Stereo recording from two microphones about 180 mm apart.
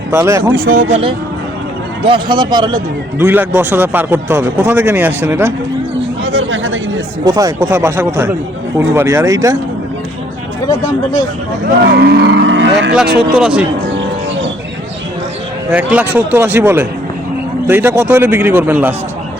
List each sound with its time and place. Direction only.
0.1 s a man's voice: 15° right (ahead or behind)
0.5 s speech: 55° right (ahead or behind)
2.0 s speech: 25° right (ahead or behind)
3.2 s a man's voice: 10° right (ahead or behind)
6.2 s chatter: 90° right
7.3 s a man's voice: 20° right (ahead or behind)
11.6 s cattle: 70° right (ahead or behind); by 12.9 s 90° right
13.3 s speech: 5° right (ahead or behind)
15.7 s a man's voice: 10° right (ahead or behind)